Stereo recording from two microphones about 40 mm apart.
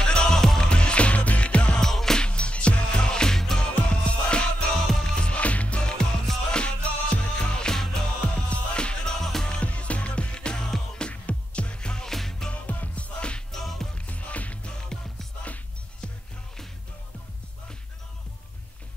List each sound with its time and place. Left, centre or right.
0.0 s music: centre
1.8 s music: centre
2.2 s music: left
4.8 s music: centre
5.1 s music: left
6.5 s music: left
7.6 s music: centre
8.2 s music: left
9.2 s music: centre
9.5 s music: left
12.1 s music: centre
12.4 s music: left
13.5 s music: centre
13.9 s music: left